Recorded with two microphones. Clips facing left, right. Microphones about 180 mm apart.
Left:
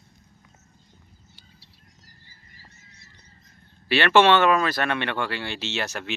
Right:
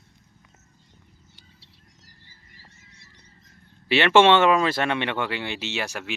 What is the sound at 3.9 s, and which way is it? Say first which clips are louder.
Speech: right 1 dB; 20° right (ahead or behind).